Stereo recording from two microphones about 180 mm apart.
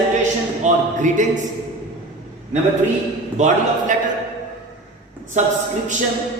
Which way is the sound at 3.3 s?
40° right (ahead or behind).